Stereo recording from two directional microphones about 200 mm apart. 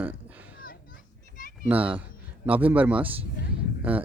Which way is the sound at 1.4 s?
45° left (ahead or behind).